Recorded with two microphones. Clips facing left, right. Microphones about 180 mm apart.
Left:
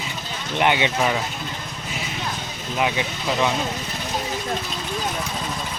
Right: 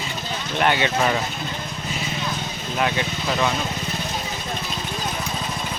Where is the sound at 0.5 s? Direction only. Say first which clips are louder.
Left 1 dB; 20° left (ahead or behind).